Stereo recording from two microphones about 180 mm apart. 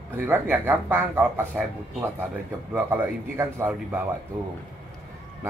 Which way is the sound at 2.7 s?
10° right (ahead or behind).